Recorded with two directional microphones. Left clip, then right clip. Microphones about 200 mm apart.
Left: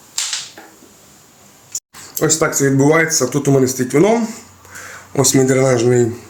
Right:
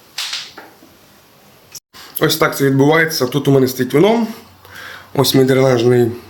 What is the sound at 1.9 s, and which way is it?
Speech, 5° left (ahead or behind).